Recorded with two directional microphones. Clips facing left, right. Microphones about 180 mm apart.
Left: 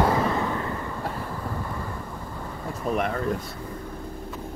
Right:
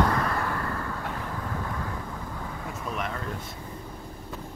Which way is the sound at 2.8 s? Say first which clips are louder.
Left 8 dB; 45° left (ahead or behind).